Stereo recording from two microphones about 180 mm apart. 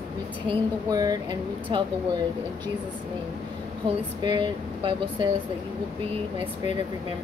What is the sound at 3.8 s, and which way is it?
Speech, 25° right (ahead or behind).